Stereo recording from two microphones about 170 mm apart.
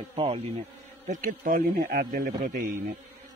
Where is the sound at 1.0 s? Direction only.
50° right (ahead or behind).